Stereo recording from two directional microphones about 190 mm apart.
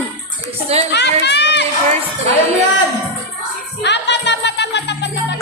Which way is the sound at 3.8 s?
65° left (ahead or behind).